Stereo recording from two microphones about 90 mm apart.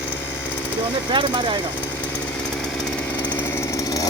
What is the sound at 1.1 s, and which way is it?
Speech, 65° right (ahead or behind).